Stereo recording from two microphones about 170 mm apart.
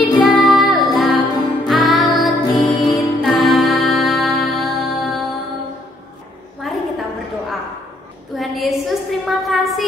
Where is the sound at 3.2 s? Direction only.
Centre (ahead or behind).